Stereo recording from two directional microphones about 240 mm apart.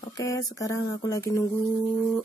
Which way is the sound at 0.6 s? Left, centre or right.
Centre.